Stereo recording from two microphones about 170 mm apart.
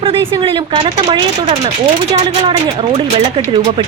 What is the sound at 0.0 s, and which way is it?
Speech, 30° right (ahead or behind).